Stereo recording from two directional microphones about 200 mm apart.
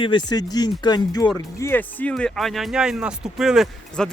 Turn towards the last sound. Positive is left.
turn(degrees=0)  # may be behind; listen again after turning